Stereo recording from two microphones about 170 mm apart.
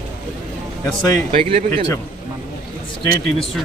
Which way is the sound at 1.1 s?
35° right (ahead or behind).